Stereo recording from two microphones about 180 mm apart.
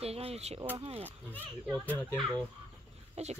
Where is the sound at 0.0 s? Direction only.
35° right (ahead or behind).